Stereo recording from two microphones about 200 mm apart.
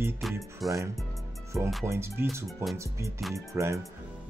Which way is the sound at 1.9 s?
10° right (ahead or behind).